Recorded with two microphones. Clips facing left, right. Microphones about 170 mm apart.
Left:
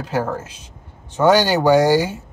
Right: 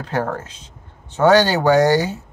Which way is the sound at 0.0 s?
5° left (ahead or behind).